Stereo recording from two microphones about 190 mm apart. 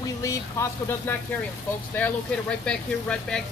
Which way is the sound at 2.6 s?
5° left (ahead or behind).